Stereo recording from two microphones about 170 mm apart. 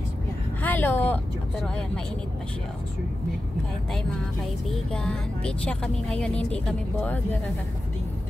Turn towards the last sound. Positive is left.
turn(degrees=5)  # may be behind; listen again after turning